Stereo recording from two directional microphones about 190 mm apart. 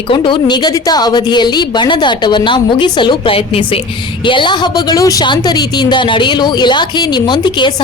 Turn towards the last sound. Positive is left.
turn(degrees=25)  # may be behind; listen again after turning